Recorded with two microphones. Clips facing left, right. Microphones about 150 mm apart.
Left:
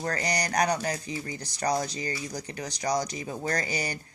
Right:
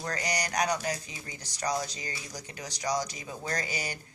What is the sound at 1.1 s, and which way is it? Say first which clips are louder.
Speech: left 10 dB; 35° left (ahead or behind).